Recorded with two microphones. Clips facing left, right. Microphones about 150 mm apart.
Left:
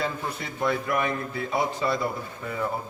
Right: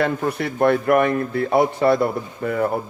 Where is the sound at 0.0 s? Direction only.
65° right (ahead or behind).